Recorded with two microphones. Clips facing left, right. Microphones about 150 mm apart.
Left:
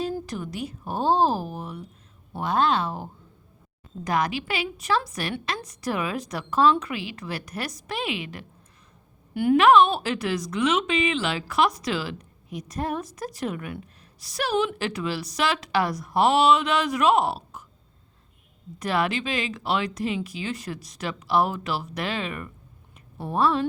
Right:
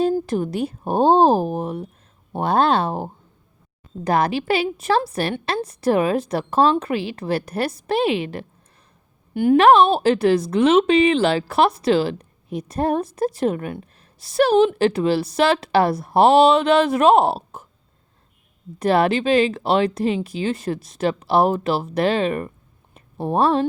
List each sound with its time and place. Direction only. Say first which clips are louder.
0.1 s a sound: right 10 dB; 50° right (ahead or behind)
0.7 s speech: right 7 dB; 55° right (ahead or behind)
2.6 s speech: right 5 dB; 30° right (ahead or behind)
2.8 s a woman's voice: right 7 dB; 55° right (ahead or behind)
4.0 s a woman's voice: right 6 dB; 35° right (ahead or behind)
18.8 s speech: right 8 dB; 30° right (ahead or behind)
23.0 s speech: right 5 dB; 25° right (ahead or behind)